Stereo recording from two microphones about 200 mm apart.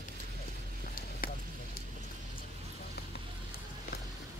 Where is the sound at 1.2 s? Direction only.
45° left (ahead or behind).